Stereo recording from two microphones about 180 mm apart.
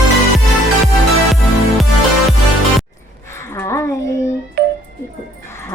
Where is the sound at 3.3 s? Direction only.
15° left (ahead or behind).